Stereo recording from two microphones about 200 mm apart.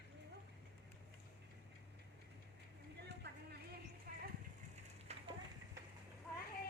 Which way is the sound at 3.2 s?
55° right (ahead or behind).